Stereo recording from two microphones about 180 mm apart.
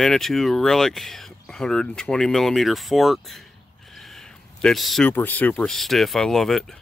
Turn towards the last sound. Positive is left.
turn(degrees=0)  # may be behind; listen again after turning